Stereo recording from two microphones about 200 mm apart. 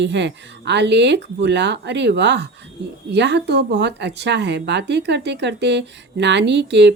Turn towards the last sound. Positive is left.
turn(degrees=-60)  # may be behind; listen again after turning